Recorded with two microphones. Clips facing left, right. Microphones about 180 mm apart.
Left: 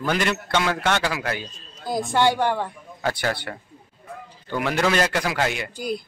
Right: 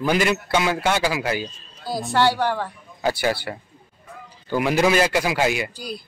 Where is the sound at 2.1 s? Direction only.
15° left (ahead or behind).